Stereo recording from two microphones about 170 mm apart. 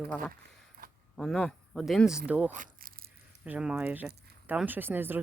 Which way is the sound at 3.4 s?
5° right (ahead or behind).